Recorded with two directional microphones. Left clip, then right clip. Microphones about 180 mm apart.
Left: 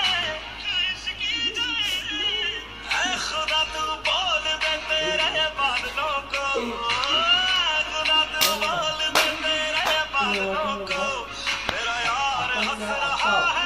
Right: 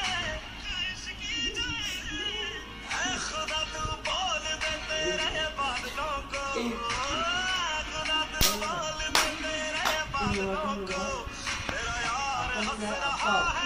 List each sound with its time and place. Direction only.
0.0 s music: 30° left (ahead or behind)
2.9 s music: 30° left (ahead or behind)
12.0 s a sound: 30° left (ahead or behind)